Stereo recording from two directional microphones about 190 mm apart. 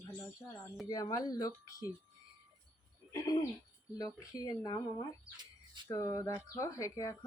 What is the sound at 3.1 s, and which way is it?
Speech, 20° left (ahead or behind).